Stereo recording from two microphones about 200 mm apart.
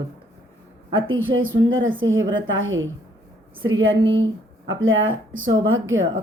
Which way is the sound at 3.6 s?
90° right.